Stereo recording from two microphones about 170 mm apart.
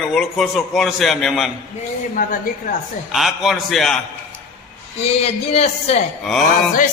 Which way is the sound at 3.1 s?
Centre (ahead or behind).